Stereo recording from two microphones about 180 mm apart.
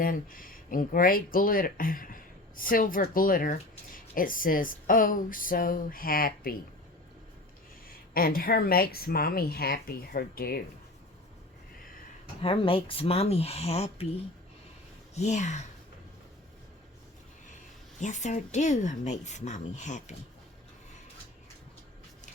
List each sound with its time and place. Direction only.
0.0 s speech: 50° left (ahead or behind)
7.9 s speech: 55° left (ahead or behind)
12.4 s speech: 30° left (ahead or behind)
15.1 s speech: 40° left (ahead or behind)
18.0 s speech: 45° left (ahead or behind)